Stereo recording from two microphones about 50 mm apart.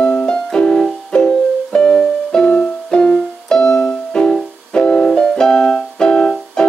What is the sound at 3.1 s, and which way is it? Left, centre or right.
Piano, centre.